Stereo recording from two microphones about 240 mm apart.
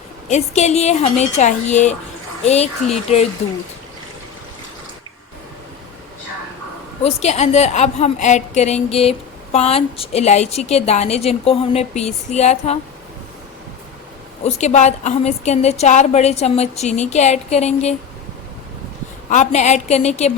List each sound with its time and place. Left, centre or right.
0.3 s a woman's voice: left
7.0 s a woman's voice: left
14.4 s a woman's voice: left
19.3 s a woman's voice: left